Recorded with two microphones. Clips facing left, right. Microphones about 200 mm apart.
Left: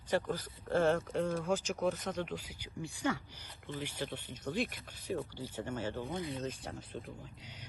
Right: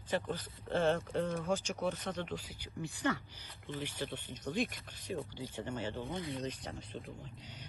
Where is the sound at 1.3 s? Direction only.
10° right (ahead or behind).